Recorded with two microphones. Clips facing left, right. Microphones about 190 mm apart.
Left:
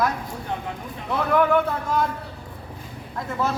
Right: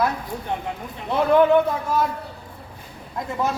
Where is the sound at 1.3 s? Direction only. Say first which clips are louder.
Right 4 dB; 25° right (ahead or behind).